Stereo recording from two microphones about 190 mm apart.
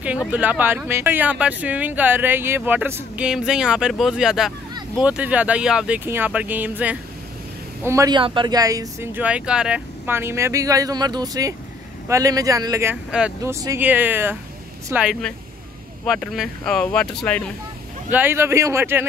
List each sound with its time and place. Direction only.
0.3 s speech: 10° right (ahead or behind)
18.1 s speech: 10° right (ahead or behind)